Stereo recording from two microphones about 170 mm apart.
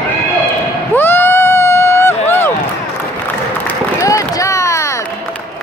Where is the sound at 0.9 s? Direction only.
15° left (ahead or behind).